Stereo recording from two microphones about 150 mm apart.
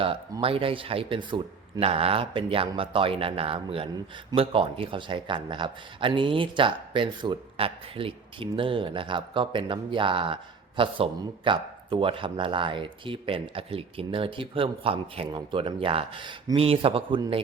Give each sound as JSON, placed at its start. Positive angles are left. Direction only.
{"t": 0.4, "sound": "speech", "side_deg": -40}